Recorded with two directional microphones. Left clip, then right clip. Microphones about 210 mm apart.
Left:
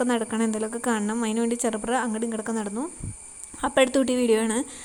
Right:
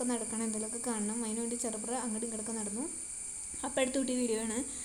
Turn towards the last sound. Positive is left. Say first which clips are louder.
# left 12 dB
turn(degrees=25)  # may be behind; listen again after turning